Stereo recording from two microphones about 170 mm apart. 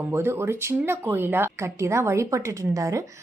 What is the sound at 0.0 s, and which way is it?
A woman's voice, 15° right (ahead or behind).